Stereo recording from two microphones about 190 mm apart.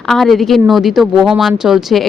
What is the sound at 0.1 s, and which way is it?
Speech, centre (ahead or behind).